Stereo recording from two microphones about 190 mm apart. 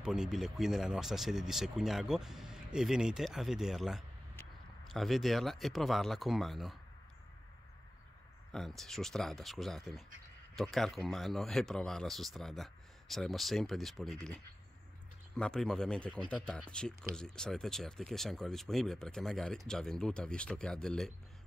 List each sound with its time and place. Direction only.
0.0 s speech: 5° right (ahead or behind)
8.5 s speech: centre (ahead or behind)